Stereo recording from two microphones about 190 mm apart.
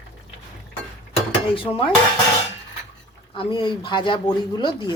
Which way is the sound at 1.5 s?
30° left (ahead or behind).